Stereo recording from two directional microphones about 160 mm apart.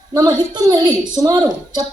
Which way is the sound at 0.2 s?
25° right (ahead or behind).